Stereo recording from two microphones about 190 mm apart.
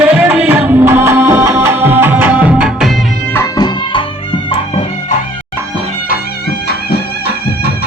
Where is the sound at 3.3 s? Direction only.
15° left (ahead or behind).